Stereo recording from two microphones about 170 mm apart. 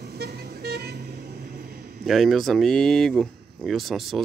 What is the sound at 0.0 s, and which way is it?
Vehicle, 65° right (ahead or behind).